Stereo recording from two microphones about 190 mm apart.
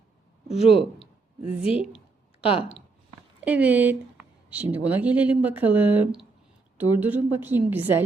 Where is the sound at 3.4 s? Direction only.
10° right (ahead or behind).